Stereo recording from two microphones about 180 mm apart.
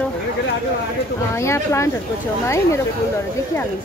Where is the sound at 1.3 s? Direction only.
15° left (ahead or behind).